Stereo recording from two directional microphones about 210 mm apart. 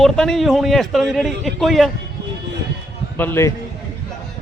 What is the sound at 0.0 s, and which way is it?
A man's voice, centre (ahead or behind).